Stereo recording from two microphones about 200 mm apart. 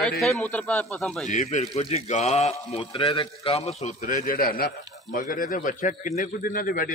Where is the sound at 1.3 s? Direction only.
35° left (ahead or behind).